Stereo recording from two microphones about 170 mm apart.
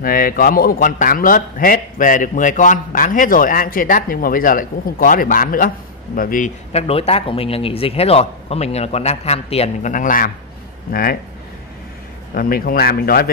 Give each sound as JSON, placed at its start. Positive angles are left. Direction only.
{"t": 0.0, "sound": "a man's voice", "side_deg": 60}
{"t": 12.4, "sound": "a man's voice", "side_deg": 60}